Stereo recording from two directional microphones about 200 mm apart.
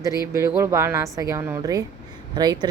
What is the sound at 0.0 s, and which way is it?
Speech, 15° right (ahead or behind).